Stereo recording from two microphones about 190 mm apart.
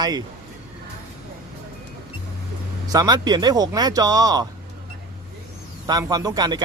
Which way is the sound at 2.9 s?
20° right (ahead or behind).